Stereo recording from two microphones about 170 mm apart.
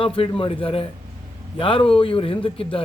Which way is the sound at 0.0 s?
30° left (ahead or behind).